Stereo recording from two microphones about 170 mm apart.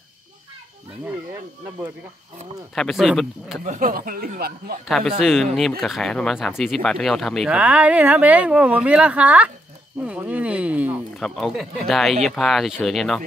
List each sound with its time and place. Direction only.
2.7 s speech: centre (ahead or behind)
3.6 s speech: 55° right (ahead or behind)
4.8 s speech: centre (ahead or behind)